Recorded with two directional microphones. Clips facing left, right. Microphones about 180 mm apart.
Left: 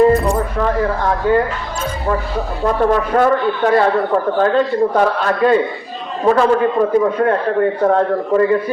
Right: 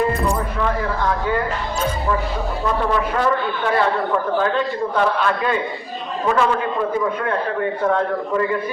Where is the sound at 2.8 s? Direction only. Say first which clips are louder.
Left 7 dB; 45° left (ahead or behind).